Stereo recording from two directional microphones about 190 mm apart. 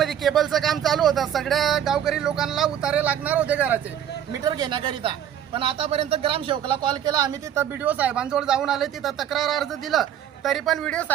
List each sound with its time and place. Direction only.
0.0 s a man's voice: centre (ahead or behind)
4.4 s a man's voice: 20° right (ahead or behind); by 11.0 s 5° left (ahead or behind)